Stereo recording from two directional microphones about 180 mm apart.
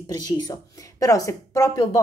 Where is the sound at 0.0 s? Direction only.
20° left (ahead or behind).